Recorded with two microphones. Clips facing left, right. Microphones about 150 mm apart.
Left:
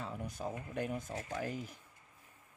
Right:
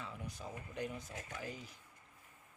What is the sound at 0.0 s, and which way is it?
Speech, 45° left (ahead or behind).